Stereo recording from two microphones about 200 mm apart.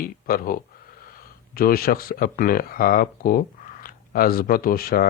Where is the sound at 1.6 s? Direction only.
45° left (ahead or behind).